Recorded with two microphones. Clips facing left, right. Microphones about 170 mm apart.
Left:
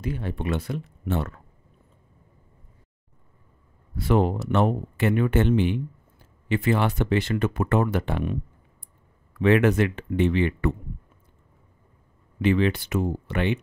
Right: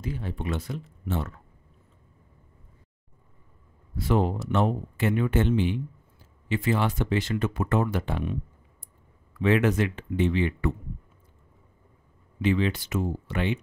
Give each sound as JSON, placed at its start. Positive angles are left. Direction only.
{"t": 0.0, "sound": "speech", "side_deg": 65}
{"t": 3.9, "sound": "speech", "side_deg": 60}
{"t": 9.4, "sound": "speech", "side_deg": 60}
{"t": 12.4, "sound": "speech", "side_deg": 60}